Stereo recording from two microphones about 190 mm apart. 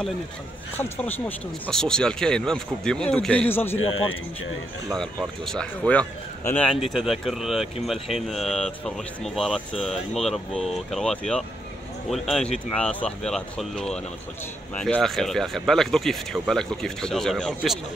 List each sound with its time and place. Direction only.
0.7 s speech: 10° left (ahead or behind)
3.9 s speech: 90° left
4.9 s speech: centre (ahead or behind)